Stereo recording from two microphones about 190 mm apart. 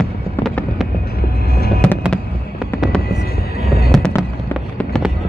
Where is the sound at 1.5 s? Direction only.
55° left (ahead or behind).